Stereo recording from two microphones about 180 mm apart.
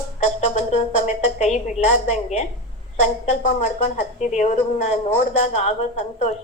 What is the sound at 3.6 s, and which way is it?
A woman's voice, 45° left (ahead or behind).